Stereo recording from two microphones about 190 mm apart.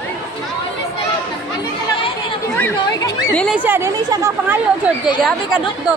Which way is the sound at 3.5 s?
10° right (ahead or behind).